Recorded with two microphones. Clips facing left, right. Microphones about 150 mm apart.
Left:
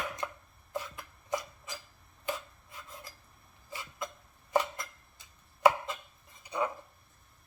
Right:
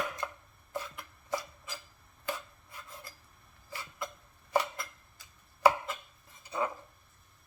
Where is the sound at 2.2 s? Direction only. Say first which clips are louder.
Left 1 dB; 20° left (ahead or behind).